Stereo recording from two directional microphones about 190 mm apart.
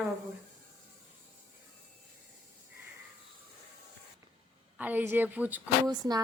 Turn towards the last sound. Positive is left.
turn(degrees=-20)  # may be behind; listen again after turning